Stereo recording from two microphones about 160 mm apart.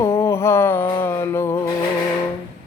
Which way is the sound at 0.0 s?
15° left (ahead or behind).